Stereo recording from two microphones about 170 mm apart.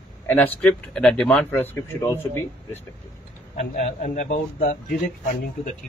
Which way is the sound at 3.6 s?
40° left (ahead or behind).